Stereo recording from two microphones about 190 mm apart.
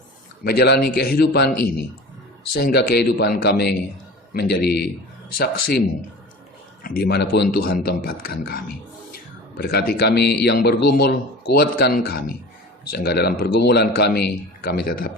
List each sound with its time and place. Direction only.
0.4 s a man's voice: 55° left (ahead or behind)
6.8 s a man's voice: 55° left (ahead or behind)